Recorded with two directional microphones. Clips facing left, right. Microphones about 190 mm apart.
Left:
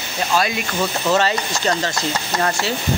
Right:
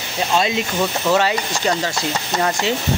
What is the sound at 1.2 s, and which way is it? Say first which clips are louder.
Speech: right 1 dB; 10° right (ahead or behind).